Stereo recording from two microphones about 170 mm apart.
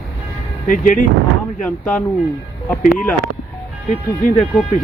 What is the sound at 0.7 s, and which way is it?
Speech, 50° left (ahead or behind).